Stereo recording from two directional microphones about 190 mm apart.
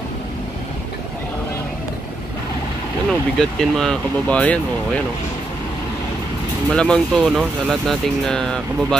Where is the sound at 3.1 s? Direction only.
5° left (ahead or behind).